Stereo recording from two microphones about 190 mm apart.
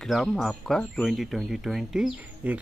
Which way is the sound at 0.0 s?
Centre (ahead or behind).